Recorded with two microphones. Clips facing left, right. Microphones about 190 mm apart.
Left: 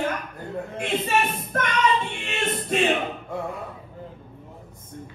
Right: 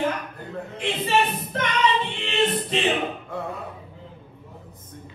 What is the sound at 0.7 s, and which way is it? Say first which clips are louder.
Female singing: right 1 dB; 50° left (ahead or behind).